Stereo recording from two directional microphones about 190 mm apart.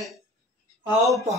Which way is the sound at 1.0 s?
15° right (ahead or behind).